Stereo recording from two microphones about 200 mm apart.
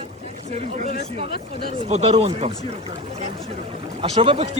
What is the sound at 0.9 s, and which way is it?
Speech, 55° left (ahead or behind).